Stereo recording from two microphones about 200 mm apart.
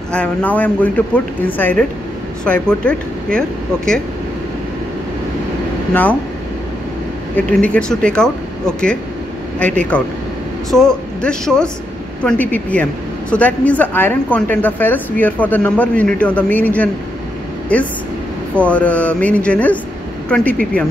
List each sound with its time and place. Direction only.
0.1 s a woman's voice: 5° left (ahead or behind)
7.3 s a woman's voice: 5° left (ahead or behind)